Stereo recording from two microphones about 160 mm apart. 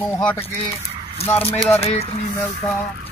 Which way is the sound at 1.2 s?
40° left (ahead or behind).